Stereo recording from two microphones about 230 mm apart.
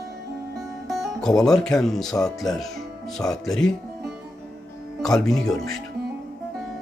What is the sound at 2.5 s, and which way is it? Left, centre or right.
Music, centre.